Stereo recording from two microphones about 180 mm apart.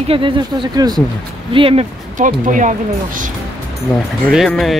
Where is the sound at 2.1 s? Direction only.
45° right (ahead or behind).